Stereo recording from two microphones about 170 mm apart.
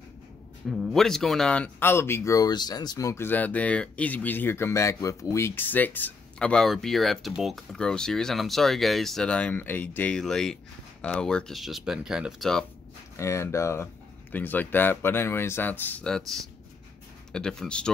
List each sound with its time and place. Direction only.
0.7 s speech: centre (ahead or behind)
13.1 s speech: 15° left (ahead or behind)